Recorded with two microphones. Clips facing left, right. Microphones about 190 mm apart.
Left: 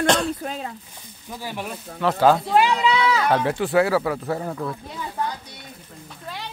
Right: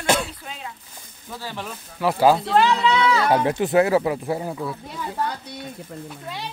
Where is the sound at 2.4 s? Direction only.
10° left (ahead or behind).